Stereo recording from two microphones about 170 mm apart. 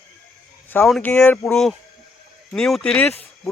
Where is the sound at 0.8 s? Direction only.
5° left (ahead or behind).